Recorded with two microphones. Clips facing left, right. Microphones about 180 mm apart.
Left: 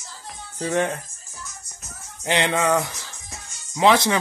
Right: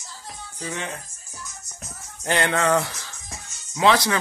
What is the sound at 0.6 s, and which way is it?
Speech, 50° left (ahead or behind).